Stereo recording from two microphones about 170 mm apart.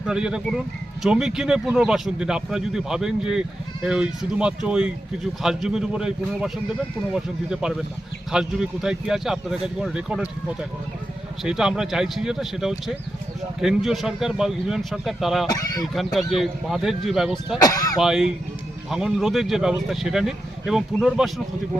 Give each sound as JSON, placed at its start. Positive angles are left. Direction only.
{"t": 0.0, "sound": "speech", "side_deg": -5}
{"t": 15.4, "sound": "speech", "side_deg": 20}
{"t": 16.1, "sound": "speech", "side_deg": 0}
{"t": 17.6, "sound": "speech", "side_deg": 20}
{"t": 18.0, "sound": "speech", "side_deg": -5}